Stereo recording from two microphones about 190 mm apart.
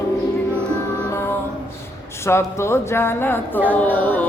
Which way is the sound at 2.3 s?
15° left (ahead or behind).